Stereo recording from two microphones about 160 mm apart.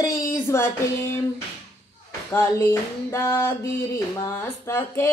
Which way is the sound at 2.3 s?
15° left (ahead or behind).